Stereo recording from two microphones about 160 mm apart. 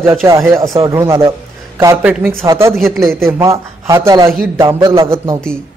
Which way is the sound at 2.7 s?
Centre (ahead or behind).